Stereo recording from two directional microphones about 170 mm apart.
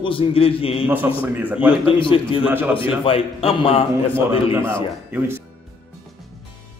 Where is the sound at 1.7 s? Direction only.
30° left (ahead or behind).